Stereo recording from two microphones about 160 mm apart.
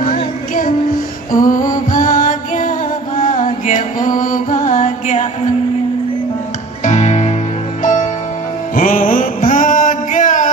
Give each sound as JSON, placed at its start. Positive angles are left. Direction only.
{"t": 1.3, "sound": "music", "side_deg": 60}
{"t": 6.8, "sound": "music", "side_deg": 45}
{"t": 8.7, "sound": "mantra", "side_deg": 55}